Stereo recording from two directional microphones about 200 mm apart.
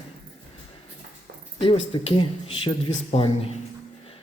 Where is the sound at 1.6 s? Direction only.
25° left (ahead or behind).